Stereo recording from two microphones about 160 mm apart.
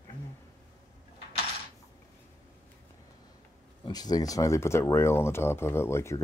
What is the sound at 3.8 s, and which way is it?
Speech, 25° left (ahead or behind).